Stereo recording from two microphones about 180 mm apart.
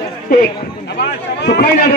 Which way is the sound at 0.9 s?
65° left (ahead or behind).